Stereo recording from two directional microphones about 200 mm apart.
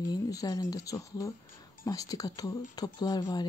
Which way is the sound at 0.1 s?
20° left (ahead or behind).